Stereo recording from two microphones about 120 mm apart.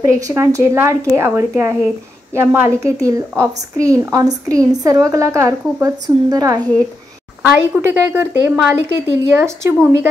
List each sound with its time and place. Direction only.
0.1 s speech: 25° right (ahead or behind)
7.4 s speech: 15° right (ahead or behind)